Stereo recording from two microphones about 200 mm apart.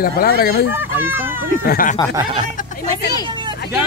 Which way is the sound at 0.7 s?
10° right (ahead or behind).